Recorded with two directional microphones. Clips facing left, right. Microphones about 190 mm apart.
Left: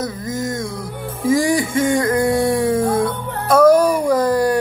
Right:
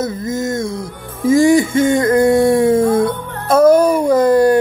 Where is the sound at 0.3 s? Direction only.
25° right (ahead or behind).